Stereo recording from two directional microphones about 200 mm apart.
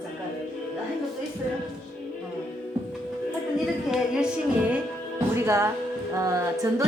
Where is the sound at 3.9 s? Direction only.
5° right (ahead or behind).